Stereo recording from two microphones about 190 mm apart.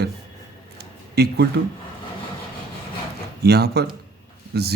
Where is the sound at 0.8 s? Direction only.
60° right (ahead or behind).